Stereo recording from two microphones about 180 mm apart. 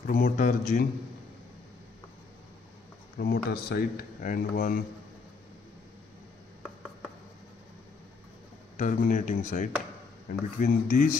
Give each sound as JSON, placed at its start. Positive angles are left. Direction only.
{"t": 0.0, "sound": "speech", "side_deg": 45}
{"t": 3.2, "sound": "speech", "side_deg": 55}
{"t": 8.7, "sound": "speech", "side_deg": 45}